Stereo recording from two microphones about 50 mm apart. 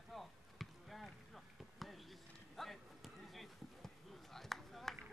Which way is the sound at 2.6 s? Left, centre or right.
Centre.